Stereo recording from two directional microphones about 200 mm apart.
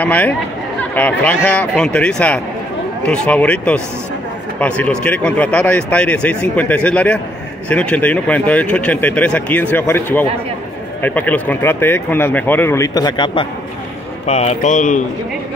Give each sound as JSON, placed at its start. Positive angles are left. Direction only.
{"t": 0.0, "sound": "speech", "side_deg": 5}